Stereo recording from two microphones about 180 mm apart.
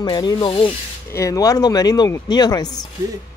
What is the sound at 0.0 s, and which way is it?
Speech, 25° left (ahead or behind).